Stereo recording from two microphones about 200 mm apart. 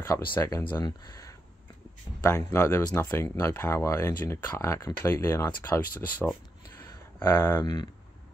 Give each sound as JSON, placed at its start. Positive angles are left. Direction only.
{"t": 0.1, "sound": "speech", "side_deg": 15}